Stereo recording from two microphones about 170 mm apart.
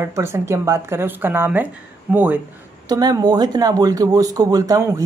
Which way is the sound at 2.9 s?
25° right (ahead or behind).